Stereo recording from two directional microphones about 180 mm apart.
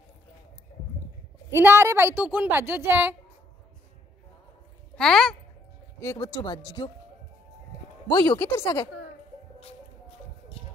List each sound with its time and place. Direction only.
1.5 s a woman's voice: 15° right (ahead or behind)
4.9 s speech: 5° left (ahead or behind)
5.9 s speech: 20° left (ahead or behind)
8.2 s speech: 15° left (ahead or behind)
10.6 s a sound: 30° left (ahead or behind)